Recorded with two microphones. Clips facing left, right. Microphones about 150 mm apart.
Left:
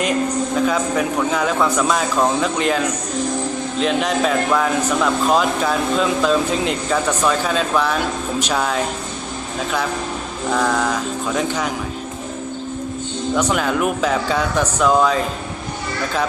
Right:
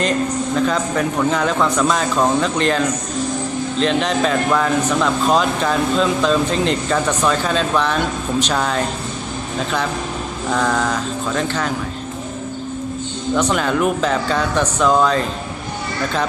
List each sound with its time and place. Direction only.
0.5 s speech: 5° left (ahead or behind)
10.5 s speech: 10° left (ahead or behind)
13.3 s speech: 5° left (ahead or behind)